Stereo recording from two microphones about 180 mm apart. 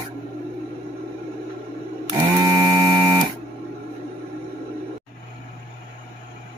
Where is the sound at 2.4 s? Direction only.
20° right (ahead or behind).